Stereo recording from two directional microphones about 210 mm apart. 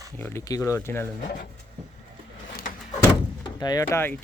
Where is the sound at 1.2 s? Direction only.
40° left (ahead or behind).